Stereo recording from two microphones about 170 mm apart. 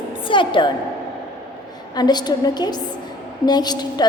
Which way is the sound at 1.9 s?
25° left (ahead or behind).